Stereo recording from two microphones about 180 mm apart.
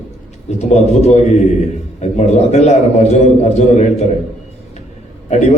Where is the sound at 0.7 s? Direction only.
40° left (ahead or behind).